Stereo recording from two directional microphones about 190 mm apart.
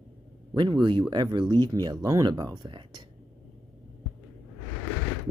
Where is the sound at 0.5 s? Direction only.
25° right (ahead or behind).